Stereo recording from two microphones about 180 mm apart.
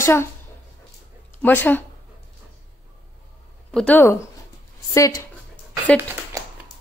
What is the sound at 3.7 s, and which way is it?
A man's voice, 10° left (ahead or behind).